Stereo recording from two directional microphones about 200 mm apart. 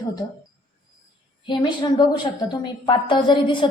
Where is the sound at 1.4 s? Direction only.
25° left (ahead or behind).